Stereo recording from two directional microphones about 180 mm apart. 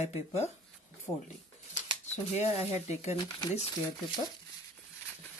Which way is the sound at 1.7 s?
40° left (ahead or behind).